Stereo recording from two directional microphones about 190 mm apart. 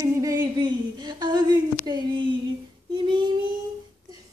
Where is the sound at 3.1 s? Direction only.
25° right (ahead or behind).